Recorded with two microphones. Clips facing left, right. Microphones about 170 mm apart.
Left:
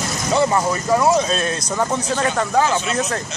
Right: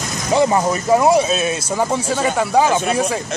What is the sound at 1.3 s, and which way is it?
A man's voice, 10° right (ahead or behind).